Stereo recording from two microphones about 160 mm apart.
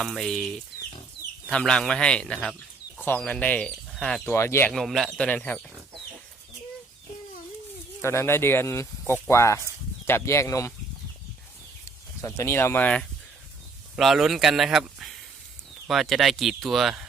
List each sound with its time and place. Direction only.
0.0 s speech: centre (ahead or behind)
1.5 s speech: 5° left (ahead or behind)
4.4 s speech: 15° left (ahead or behind)
4.7 s speech: centre (ahead or behind)
8.0 s speech: 15° left (ahead or behind)
12.2 s speech: 15° left (ahead or behind); by 17.1 s centre (ahead or behind)